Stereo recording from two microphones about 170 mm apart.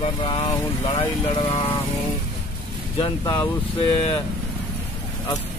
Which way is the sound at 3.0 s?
25° left (ahead or behind).